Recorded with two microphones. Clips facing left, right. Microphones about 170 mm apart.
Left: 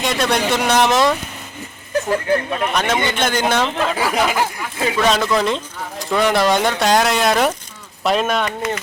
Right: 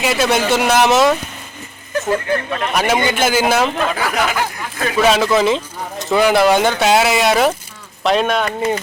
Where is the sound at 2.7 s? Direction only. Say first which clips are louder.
Right 5 dB; 10° right (ahead or behind).